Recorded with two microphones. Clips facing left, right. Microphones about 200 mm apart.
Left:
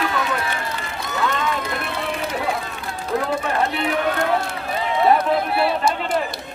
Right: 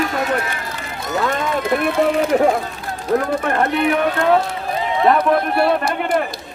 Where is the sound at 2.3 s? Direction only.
50° right (ahead or behind).